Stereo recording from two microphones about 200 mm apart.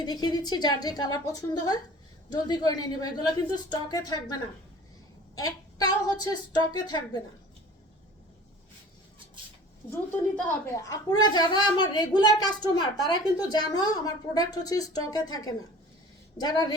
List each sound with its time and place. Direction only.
0.0 s a woman's voice: 20° left (ahead or behind)
10.1 s a woman's voice: 10° left (ahead or behind)